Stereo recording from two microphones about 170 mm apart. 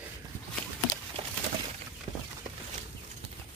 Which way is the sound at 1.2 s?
35° right (ahead or behind).